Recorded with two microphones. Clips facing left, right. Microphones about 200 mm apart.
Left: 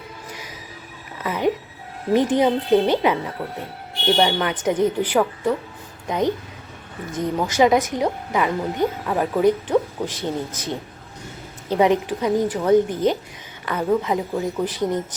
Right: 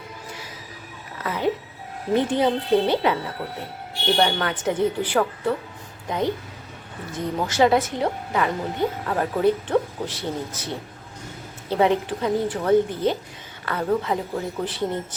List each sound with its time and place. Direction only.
1.2 s speech: 15° left (ahead or behind)
4.2 s speech: 15° left (ahead or behind)
7.3 s speech: 15° left (ahead or behind)
11.7 s speech: 15° left (ahead or behind)